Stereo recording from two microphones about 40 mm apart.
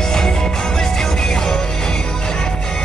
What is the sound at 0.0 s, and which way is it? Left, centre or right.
Music, centre.